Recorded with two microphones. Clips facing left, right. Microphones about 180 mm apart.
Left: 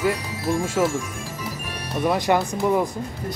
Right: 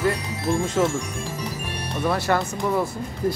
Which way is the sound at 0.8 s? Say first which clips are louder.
Even; 10° left (ahead or behind).